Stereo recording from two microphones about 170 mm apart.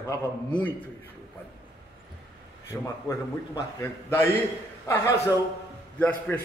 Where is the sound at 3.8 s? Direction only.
10° left (ahead or behind).